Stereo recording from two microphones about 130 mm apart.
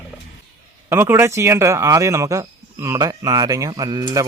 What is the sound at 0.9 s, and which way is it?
Speech, 15° right (ahead or behind).